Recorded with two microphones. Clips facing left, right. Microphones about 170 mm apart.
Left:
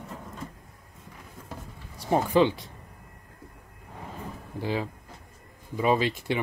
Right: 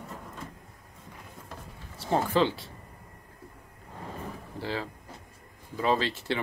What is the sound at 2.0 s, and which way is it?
Speech, 15° left (ahead or behind).